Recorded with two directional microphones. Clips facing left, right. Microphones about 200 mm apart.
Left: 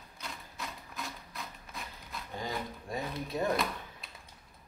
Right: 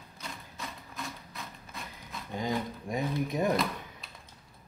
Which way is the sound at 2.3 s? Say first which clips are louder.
Right 6 dB; 20° right (ahead or behind).